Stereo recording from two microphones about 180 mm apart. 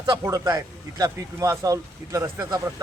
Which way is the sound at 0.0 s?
20° right (ahead or behind).